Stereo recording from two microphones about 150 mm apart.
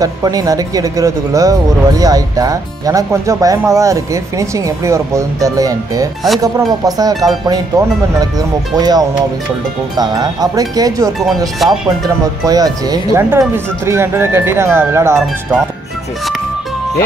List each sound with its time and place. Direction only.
0.0 s speech: 25° right (ahead or behind)
8.7 s speech: 25° right (ahead or behind)
11.1 s speech: centre (ahead or behind)
12.4 s speech: 25° right (ahead or behind)